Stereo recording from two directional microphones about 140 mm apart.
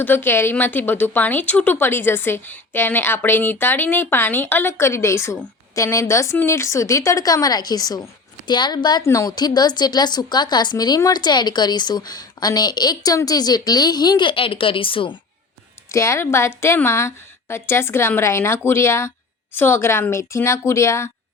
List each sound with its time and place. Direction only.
0.0 s a woman's voice: 15° left (ahead or behind); by 15.2 s 35° left (ahead or behind)
15.9 s a woman's voice: 20° left (ahead or behind)